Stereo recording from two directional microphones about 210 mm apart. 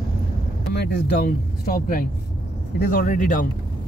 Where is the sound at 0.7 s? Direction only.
50° left (ahead or behind).